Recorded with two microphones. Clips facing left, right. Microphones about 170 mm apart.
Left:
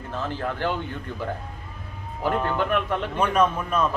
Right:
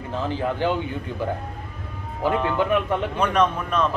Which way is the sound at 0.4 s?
10° right (ahead or behind).